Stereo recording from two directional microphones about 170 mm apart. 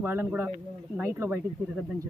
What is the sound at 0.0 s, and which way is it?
Speech, 10° right (ahead or behind).